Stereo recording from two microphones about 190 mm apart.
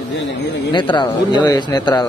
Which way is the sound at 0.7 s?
25° left (ahead or behind).